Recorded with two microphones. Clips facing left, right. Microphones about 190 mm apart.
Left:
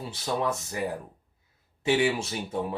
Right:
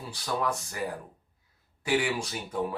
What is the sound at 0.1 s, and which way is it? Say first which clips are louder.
Speech: left 1 dB; 25° left (ahead or behind).